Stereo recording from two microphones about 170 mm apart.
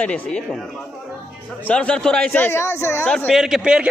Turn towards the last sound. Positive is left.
turn(degrees=-5)  # may be behind; listen again after turning